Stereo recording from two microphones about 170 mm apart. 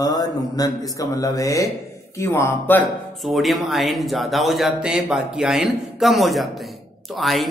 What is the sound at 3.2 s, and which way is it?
Speech, centre (ahead or behind).